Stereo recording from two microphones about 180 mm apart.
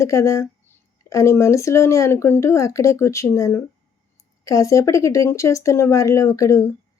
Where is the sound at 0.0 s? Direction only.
15° left (ahead or behind).